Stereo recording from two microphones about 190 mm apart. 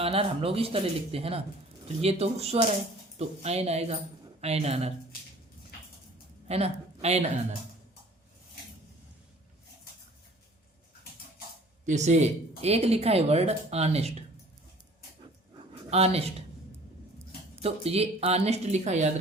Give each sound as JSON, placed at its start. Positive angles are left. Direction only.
{"t": 0.0, "sound": "speech", "side_deg": -30}
{"t": 6.5, "sound": "a woman's voice", "side_deg": -35}
{"t": 11.9, "sound": "speech", "side_deg": -35}
{"t": 15.5, "sound": "dog", "side_deg": -30}
{"t": 17.6, "sound": "speech", "side_deg": -30}